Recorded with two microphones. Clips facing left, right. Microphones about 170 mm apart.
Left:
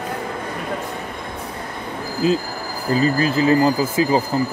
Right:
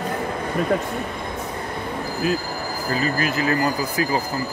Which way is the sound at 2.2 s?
25° left (ahead or behind).